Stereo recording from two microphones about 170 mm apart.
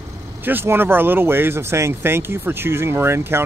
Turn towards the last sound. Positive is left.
turn(degrees=-15)  # may be behind; listen again after turning